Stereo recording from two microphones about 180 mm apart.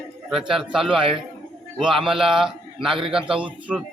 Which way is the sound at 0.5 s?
Centre (ahead or behind).